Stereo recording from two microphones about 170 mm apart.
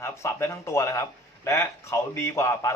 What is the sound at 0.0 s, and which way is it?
Speech, 15° left (ahead or behind).